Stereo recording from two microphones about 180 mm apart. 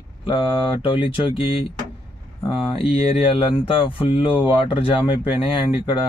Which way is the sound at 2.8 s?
30° left (ahead or behind).